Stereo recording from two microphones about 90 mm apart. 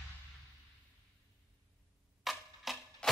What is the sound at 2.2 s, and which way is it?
Music, centre (ahead or behind).